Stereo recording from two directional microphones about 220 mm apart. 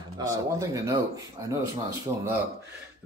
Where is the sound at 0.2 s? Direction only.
15° right (ahead or behind).